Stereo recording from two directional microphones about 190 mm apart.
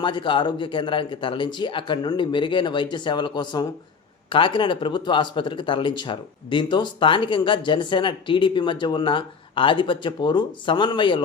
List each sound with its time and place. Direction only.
0.0 s speech: 25° left (ahead or behind)